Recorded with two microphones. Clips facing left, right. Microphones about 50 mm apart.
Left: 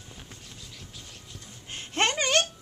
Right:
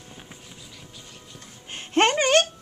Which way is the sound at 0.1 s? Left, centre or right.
Centre.